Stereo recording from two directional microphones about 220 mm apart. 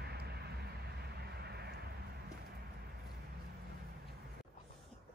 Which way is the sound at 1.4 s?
45° right (ahead or behind).